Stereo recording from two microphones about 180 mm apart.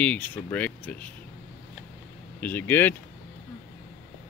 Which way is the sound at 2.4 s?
10° left (ahead or behind).